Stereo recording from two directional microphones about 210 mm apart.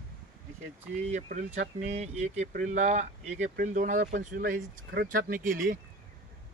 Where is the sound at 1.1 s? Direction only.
35° right (ahead or behind).